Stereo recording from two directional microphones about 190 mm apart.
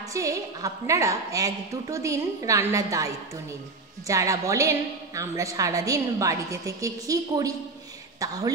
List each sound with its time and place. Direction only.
0.1 s a woman's voice: 15° right (ahead or behind)
4.1 s a woman's voice: 15° right (ahead or behind)